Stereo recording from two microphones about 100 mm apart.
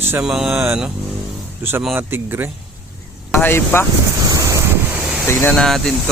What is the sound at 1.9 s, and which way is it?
Speech, 20° right (ahead or behind).